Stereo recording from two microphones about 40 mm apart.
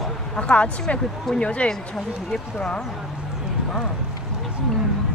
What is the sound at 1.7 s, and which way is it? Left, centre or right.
Speech, centre.